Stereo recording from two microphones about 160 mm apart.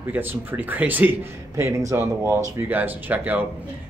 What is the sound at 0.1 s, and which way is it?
Speech, 10° right (ahead or behind).